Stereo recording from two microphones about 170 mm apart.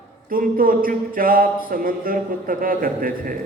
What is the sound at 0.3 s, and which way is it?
A man's voice, 55° right (ahead or behind).